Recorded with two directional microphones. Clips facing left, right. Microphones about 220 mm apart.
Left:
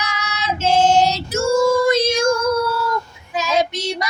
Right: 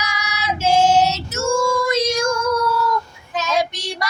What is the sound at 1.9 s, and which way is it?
Child singing, 30° left (ahead or behind).